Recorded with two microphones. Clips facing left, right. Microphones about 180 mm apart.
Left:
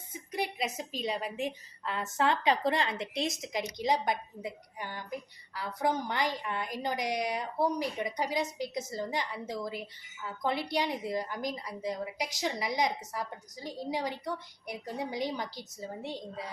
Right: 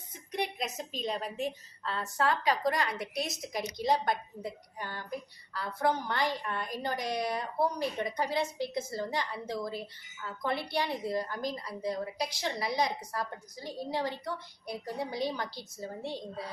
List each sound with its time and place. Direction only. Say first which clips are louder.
0.1 s a woman's voice: even; 10° left (ahead or behind)